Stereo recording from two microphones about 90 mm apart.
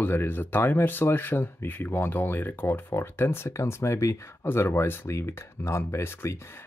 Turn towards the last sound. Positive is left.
turn(degrees=30)  # may be behind; listen again after turning